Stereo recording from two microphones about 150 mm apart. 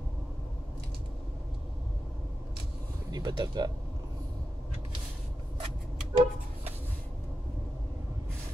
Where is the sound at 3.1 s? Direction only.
25° right (ahead or behind).